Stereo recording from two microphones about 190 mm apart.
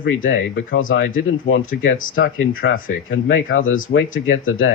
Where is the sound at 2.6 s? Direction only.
65° left (ahead or behind).